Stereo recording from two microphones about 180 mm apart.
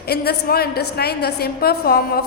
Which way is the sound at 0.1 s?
60° left (ahead or behind).